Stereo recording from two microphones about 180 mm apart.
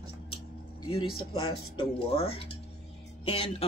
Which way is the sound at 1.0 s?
30° left (ahead or behind).